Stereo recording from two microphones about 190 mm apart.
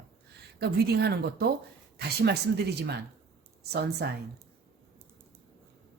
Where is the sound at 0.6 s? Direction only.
60° right (ahead or behind).